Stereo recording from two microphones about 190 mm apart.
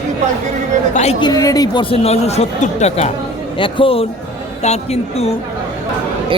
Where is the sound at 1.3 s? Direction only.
20° left (ahead or behind).